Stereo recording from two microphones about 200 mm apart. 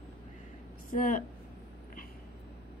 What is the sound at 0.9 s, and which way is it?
Speech, 40° left (ahead or behind).